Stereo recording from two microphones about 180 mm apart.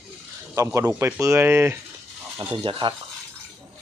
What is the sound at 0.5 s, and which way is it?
Speech, 15° right (ahead or behind).